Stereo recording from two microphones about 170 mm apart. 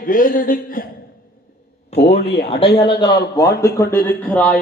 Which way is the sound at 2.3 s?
70° left (ahead or behind).